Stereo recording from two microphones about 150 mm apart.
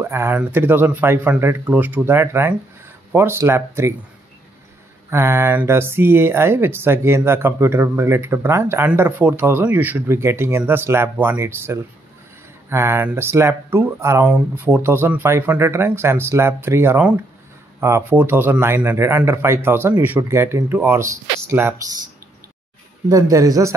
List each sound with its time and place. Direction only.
0.0 s speech: 15° right (ahead or behind)
5.1 s speech: 15° right (ahead or behind)
23.0 s speech: 20° right (ahead or behind)